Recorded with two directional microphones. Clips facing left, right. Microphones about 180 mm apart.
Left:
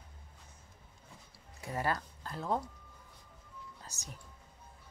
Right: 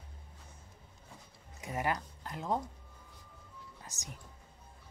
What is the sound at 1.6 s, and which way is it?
Speech, 20° right (ahead or behind).